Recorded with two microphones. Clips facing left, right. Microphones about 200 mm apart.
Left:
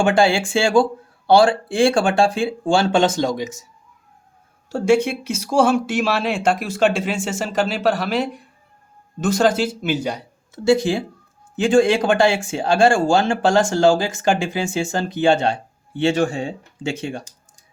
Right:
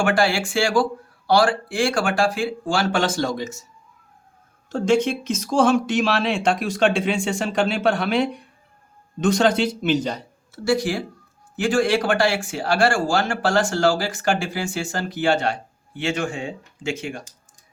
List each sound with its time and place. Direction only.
0.0 s speech: 25° left (ahead or behind)
4.7 s speech: 10° left (ahead or behind); by 17.2 s 30° left (ahead or behind)